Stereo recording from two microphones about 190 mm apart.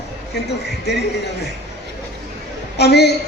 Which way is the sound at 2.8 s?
60° left (ahead or behind).